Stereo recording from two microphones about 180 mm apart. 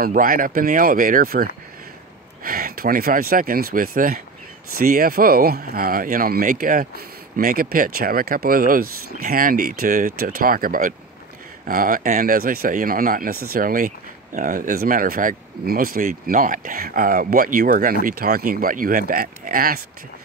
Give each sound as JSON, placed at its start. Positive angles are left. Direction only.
{"t": 0.0, "sound": "speech", "side_deg": -50}